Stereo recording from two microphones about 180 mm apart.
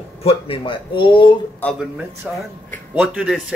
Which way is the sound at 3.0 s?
5° right (ahead or behind).